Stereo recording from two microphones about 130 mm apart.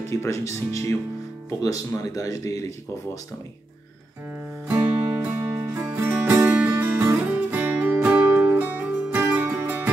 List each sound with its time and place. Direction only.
0.1 s speech: 20° left (ahead or behind)
4.6 s music: 10° right (ahead or behind)